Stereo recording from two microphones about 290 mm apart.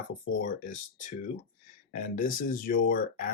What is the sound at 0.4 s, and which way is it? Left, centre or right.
Speech, left.